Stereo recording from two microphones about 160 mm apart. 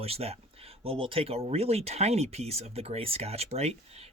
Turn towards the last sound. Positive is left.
turn(degrees=-40)  # may be behind; listen again after turning